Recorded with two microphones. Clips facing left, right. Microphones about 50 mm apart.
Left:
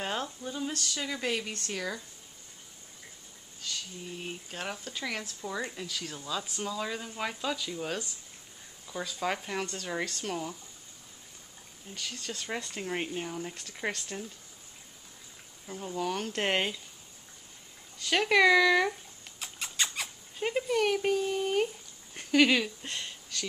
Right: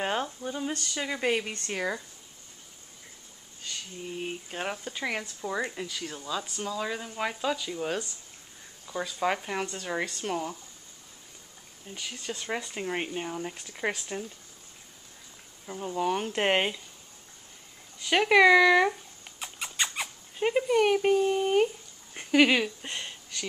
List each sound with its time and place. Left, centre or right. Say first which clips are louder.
0.0 s speech: right 4 dB; centre
3.6 s speech: right 1 dB; centre
11.9 s speech: right 2 dB; centre
15.6 s speech: right 4 dB; centre
17.9 s speech: right 4 dB; centre
19.4 s a sound: right 2 dB; centre
20.6 s speech: right 4 dB; centre
22.1 s a sound: right 2 dB; centre